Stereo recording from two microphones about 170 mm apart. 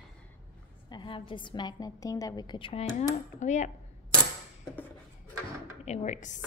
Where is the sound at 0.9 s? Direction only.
30° left (ahead or behind); by 3.7 s 45° left (ahead or behind).